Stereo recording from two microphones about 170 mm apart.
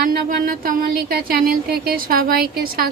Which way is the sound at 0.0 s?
60° right (ahead or behind).